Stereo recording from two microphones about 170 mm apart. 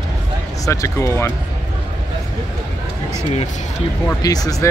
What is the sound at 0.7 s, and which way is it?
Speech, 15° left (ahead or behind).